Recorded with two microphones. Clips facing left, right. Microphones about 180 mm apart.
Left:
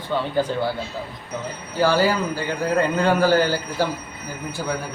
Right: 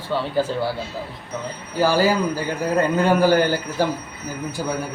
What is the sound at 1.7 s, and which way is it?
Speech, 10° right (ahead or behind).